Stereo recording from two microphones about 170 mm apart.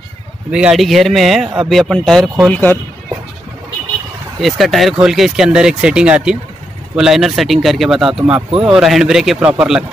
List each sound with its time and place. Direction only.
0.5 s speech: 5° right (ahead or behind)
4.4 s speech: centre (ahead or behind)